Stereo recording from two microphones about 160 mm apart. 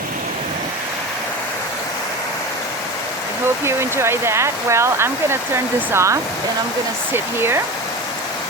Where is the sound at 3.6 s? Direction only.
15° right (ahead or behind).